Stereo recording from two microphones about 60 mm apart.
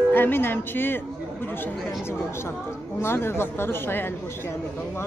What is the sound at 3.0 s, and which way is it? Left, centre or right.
A woman's voice, left.